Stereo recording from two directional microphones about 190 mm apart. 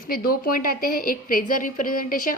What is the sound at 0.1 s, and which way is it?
A woman's voice, 50° left (ahead or behind).